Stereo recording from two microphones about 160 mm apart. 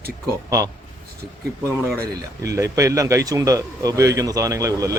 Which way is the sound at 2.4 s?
20° right (ahead or behind).